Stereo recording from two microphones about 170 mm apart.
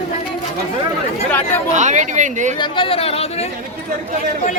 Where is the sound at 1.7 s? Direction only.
45° right (ahead or behind).